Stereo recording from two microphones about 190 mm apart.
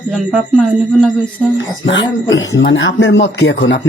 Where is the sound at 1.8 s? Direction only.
80° left.